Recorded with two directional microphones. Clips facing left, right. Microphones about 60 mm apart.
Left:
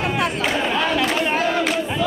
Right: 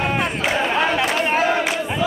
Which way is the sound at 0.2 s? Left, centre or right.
Centre.